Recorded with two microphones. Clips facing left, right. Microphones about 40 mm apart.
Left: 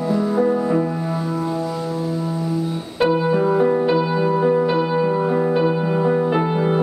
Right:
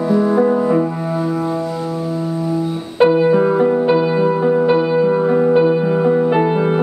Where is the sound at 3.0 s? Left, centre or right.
Centre.